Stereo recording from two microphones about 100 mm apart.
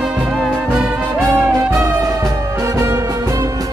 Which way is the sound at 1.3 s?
30° right (ahead or behind).